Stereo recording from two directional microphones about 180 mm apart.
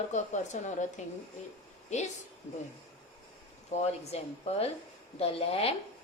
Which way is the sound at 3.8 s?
35° left (ahead or behind).